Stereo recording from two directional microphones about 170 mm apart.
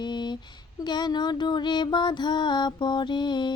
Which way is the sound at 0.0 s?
25° left (ahead or behind).